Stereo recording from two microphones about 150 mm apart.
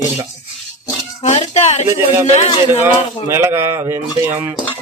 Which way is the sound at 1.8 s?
15° right (ahead or behind).